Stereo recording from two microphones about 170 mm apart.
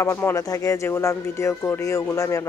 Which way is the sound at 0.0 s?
15° left (ahead or behind).